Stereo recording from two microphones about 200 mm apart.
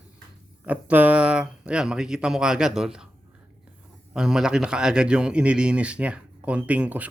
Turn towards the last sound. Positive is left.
turn(degrees=-5)  # may be behind; listen again after turning